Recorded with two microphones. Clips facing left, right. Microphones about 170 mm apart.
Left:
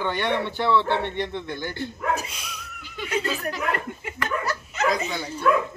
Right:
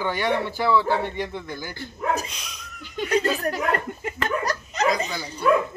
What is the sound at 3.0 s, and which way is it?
Speech, 40° right (ahead or behind).